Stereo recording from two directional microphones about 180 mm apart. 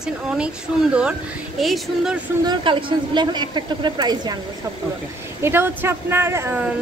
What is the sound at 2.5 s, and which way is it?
A woman's voice, 30° right (ahead or behind).